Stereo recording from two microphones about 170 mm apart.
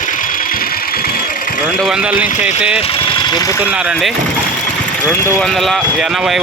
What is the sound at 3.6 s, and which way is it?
Speech, 5° right (ahead or behind).